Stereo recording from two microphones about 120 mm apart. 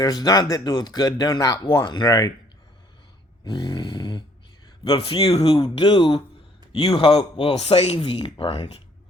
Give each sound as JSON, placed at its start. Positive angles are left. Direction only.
{"t": 0.0, "sound": "speech", "side_deg": 35}
{"t": 3.4, "sound": "a sound", "side_deg": 40}
{"t": 4.8, "sound": "speech", "side_deg": 50}
{"t": 5.4, "sound": "speech", "side_deg": 35}
{"t": 8.0, "sound": "speech", "side_deg": 45}